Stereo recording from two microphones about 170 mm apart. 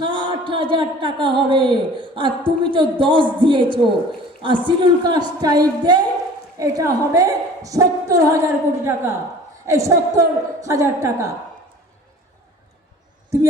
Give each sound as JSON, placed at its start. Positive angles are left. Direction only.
{"t": 0.0, "sound": "a woman's voice", "side_deg": -30}